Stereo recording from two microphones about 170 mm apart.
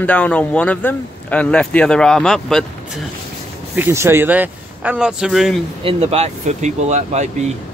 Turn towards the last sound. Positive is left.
turn(degrees=-40)  # may be behind; listen again after turning